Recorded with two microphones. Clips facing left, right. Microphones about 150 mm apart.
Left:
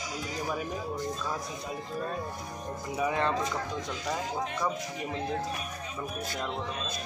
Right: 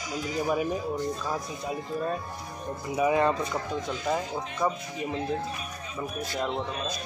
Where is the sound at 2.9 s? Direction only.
10° right (ahead or behind).